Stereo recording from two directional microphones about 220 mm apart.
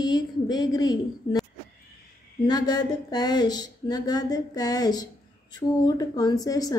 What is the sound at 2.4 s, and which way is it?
A woman's voice, 20° left (ahead or behind).